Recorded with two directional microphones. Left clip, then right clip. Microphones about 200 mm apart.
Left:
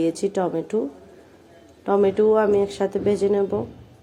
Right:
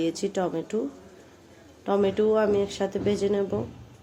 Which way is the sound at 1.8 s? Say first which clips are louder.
Left 5 dB; 5° left (ahead or behind).